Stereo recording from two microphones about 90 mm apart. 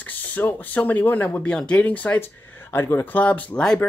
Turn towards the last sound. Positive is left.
turn(degrees=10)  # may be behind; listen again after turning